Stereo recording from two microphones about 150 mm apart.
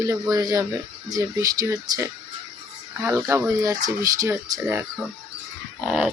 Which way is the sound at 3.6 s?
25° right (ahead or behind).